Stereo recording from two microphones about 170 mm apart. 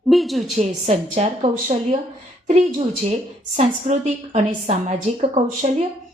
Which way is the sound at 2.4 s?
40° right (ahead or behind).